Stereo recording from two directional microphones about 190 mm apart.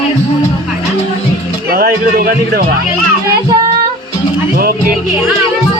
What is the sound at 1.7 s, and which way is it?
Speech, 55° right (ahead or behind).